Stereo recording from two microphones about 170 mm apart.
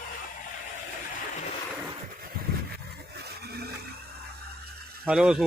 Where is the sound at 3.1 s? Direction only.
70° right (ahead or behind).